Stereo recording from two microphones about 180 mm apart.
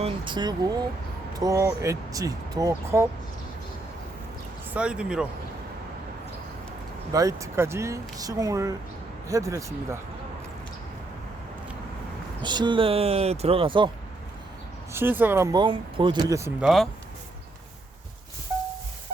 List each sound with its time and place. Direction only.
0.0 s speech: 25° right (ahead or behind)
4.7 s speech: 5° right (ahead or behind)
7.1 s speech: 20° right (ahead or behind)
12.4 s speech: 25° right (ahead or behind)
14.9 s speech: 10° right (ahead or behind)
15.5 s speech: 30° right (ahead or behind)
16.6 s speech: centre (ahead or behind)